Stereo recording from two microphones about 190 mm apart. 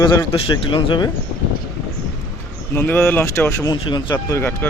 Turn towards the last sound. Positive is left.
turn(degrees=10)  # may be behind; listen again after turning